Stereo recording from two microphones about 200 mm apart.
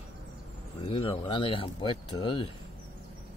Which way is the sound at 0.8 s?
25° left (ahead or behind).